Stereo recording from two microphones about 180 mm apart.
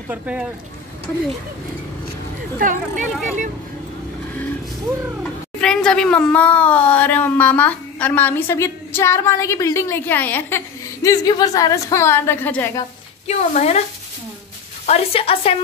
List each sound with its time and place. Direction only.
0.1 s speech: 5° right (ahead or behind)
2.6 s speech: 45° right (ahead or behind)
3.1 s speech: 5° right (ahead or behind)
5.2 s a woman's voice: 5° left (ahead or behind)
13.3 s a woman's voice: 40° left (ahead or behind)
14.9 s a woman's voice: 35° left (ahead or behind)